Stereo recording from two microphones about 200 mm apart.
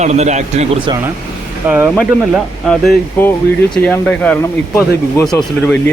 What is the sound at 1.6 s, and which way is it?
Speech, 10° right (ahead or behind).